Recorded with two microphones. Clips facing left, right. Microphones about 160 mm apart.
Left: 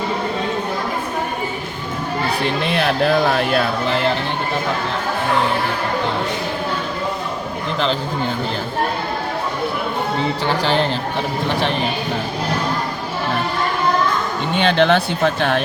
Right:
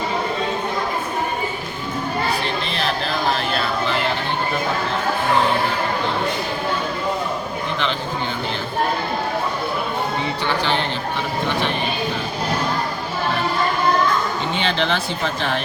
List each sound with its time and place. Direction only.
2.7 s speech: 60° left (ahead or behind)
14.6 s speech: 60° left (ahead or behind)